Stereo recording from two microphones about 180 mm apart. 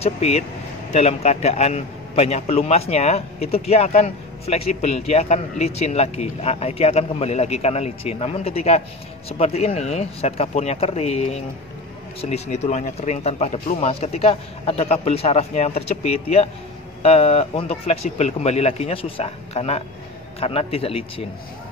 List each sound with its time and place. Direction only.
0.0 s a man's voice: 35° left (ahead or behind)